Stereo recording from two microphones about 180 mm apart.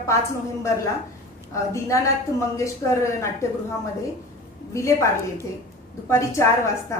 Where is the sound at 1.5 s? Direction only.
15° left (ahead or behind).